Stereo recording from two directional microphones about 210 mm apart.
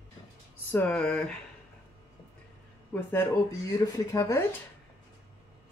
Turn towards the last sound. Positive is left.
turn(degrees=15)  # may be behind; listen again after turning